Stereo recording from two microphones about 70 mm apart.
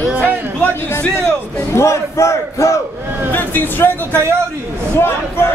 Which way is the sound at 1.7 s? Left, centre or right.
Left.